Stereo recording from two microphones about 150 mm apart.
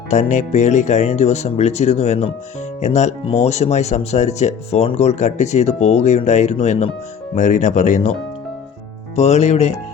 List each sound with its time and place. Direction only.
0.1 s speech: 50° left (ahead or behind)
9.1 s speech: 50° left (ahead or behind)